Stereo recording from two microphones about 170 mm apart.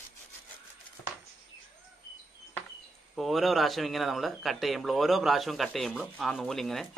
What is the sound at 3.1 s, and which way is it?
Speech, centre (ahead or behind).